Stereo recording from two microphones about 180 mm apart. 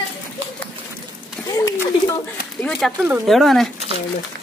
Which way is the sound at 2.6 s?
5° left (ahead or behind).